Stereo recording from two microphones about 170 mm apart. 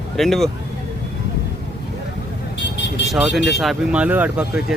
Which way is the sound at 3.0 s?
Centre (ahead or behind).